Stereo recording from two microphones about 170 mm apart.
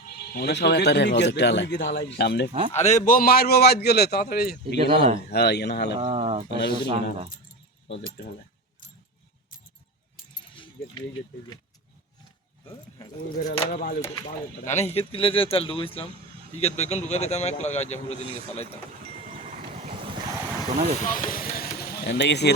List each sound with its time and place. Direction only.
0.2 s speech: 65° left (ahead or behind)
2.5 s speech: 30° right (ahead or behind)
2.7 s a man's voice: 40° left (ahead or behind); by 4.8 s 65° left (ahead or behind)
4.8 s speech: 35° right (ahead or behind)
5.3 s a man's voice: 75° left (ahead or behind)
6.0 s speech: 35° right (ahead or behind)
6.5 s a man's voice: 80° left
6.8 s speech: 35° right (ahead or behind)
10.5 s keys jangling: 30° left (ahead or behind)
13.4 s a man's voice: 70° left (ahead or behind)
13.7 s speech: 55° left (ahead or behind)
14.6 s speech: 45° left (ahead or behind)
14.9 s a man's voice: 35° left (ahead or behind)
21.1 s speech: 55° left (ahead or behind); by 22.5 s 85° left